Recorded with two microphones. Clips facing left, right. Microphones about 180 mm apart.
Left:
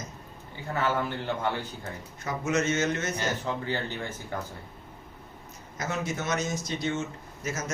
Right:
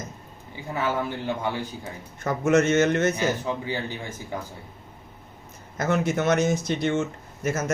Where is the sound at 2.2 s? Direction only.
55° right (ahead or behind).